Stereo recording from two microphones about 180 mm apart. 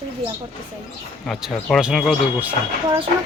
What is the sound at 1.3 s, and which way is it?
Speech, centre (ahead or behind).